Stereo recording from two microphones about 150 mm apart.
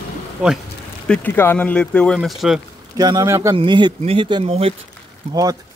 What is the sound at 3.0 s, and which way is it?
Speech, 25° right (ahead or behind).